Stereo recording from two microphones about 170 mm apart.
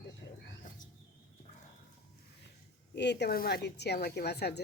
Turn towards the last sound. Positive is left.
turn(degrees=75)  # may be behind; listen again after turning